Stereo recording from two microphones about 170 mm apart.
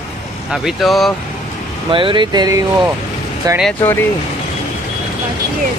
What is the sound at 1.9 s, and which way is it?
Speech, 30° right (ahead or behind).